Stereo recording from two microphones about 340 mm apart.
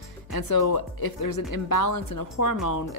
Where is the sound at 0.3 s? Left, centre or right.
Left.